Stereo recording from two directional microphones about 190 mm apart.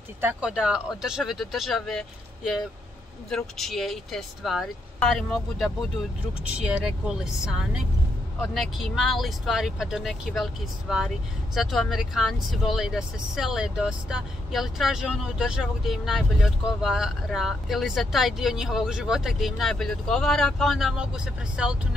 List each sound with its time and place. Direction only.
0.2 s speech: 5° right (ahead or behind)
3.3 s speech: 5° left (ahead or behind)